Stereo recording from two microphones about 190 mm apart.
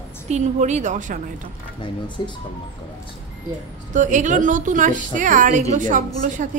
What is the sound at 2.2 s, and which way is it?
Speech, 25° left (ahead or behind).